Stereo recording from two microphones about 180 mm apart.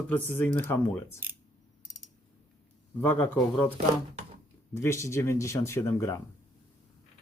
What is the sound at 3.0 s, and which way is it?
Speech, 10° left (ahead or behind).